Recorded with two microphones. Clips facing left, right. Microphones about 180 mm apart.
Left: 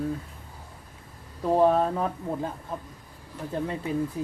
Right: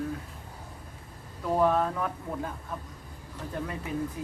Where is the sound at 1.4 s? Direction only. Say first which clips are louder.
Left 4 dB; 30° left (ahead or behind).